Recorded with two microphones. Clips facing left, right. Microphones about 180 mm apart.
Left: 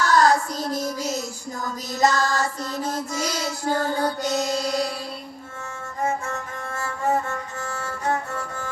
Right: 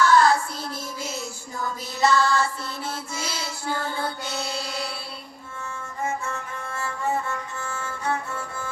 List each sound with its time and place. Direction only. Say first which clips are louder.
0.0 s child singing: even; 40° left (ahead or behind)
1.6 s mantra: left 2 dB; 40° left (ahead or behind)
5.6 s music: left 3 dB; 40° left (ahead or behind)